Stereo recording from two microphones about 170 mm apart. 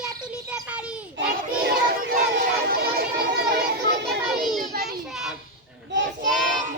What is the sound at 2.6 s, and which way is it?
A child's voice, 65° right (ahead or behind).